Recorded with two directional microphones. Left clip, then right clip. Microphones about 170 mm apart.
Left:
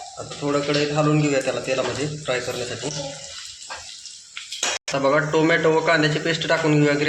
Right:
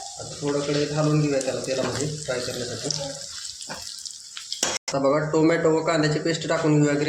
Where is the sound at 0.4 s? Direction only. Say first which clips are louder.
Left 3 dB; 20° left (ahead or behind).